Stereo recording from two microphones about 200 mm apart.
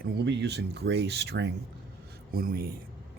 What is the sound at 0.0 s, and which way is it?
Speech, 60° right (ahead or behind).